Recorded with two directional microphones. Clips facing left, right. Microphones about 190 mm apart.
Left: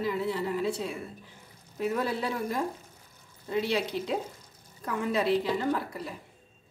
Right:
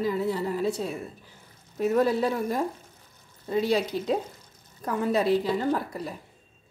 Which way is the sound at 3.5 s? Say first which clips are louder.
Right 4 dB; 40° right (ahead or behind).